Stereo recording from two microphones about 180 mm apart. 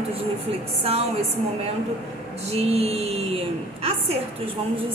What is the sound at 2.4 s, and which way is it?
Speech, 35° right (ahead or behind).